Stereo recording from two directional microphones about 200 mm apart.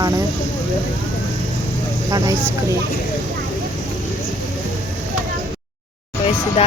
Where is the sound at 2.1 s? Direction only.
15° right (ahead or behind).